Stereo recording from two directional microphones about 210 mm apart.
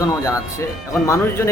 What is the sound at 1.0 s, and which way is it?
Speech, 15° left (ahead or behind).